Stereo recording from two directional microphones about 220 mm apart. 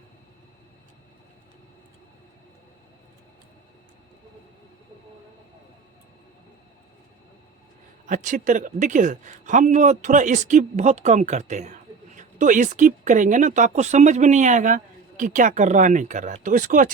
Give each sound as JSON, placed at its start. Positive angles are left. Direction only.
{"t": 8.0, "sound": "a man's voice", "side_deg": -35}